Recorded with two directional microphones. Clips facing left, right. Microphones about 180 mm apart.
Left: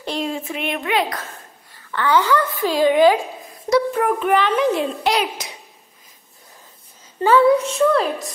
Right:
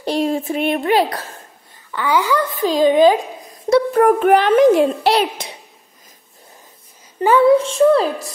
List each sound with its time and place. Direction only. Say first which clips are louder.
0.0 s speech: right 6 dB; 40° right (ahead or behind)
1.9 s a woman's voice: even; 10° right (ahead or behind)
3.7 s a child's voice: right 5 dB; 40° right (ahead or behind)
5.0 s a child's voice: right 4 dB; 35° right (ahead or behind)
7.2 s a woman's voice: right 2 dB; 15° right (ahead or behind)